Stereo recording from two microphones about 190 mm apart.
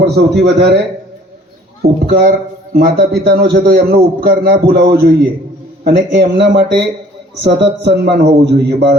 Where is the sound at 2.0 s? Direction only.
55° right (ahead or behind).